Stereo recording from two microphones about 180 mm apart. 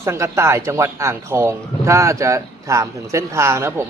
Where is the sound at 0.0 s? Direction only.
15° right (ahead or behind).